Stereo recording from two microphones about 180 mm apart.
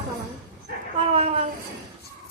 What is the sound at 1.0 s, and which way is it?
Speech, 35° right (ahead or behind).